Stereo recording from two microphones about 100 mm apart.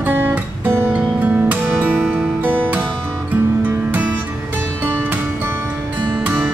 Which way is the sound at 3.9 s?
15° right (ahead or behind).